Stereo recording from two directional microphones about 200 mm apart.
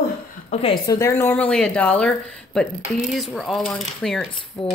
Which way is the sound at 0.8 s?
15° left (ahead or behind).